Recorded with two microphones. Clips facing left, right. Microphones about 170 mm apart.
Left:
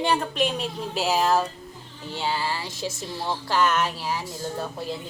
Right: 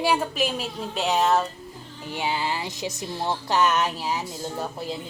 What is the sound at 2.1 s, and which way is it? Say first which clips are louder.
Music: right 1 dB; 15° right (ahead or behind).